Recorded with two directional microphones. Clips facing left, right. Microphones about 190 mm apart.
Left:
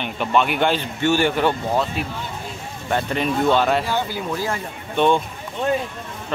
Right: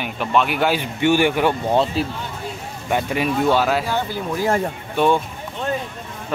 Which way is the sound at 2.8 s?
10° right (ahead or behind).